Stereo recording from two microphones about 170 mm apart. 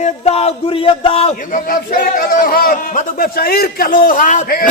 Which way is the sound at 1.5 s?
55° left (ahead or behind).